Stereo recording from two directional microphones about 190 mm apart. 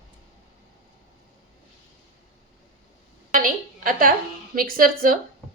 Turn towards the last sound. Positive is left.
turn(degrees=-50)  # may be behind; listen again after turning